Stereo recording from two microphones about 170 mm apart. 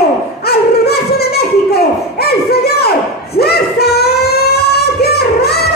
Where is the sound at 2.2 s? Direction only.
70° left (ahead or behind).